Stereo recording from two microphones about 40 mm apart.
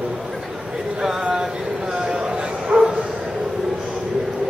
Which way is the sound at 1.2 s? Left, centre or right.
Right.